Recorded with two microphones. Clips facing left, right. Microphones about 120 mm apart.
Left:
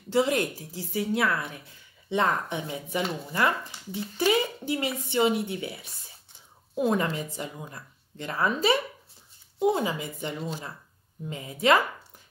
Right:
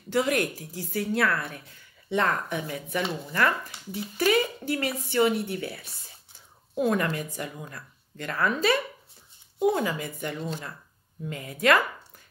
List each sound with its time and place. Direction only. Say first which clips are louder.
0.1 s speech: left 1 dB; 20° left (ahead or behind)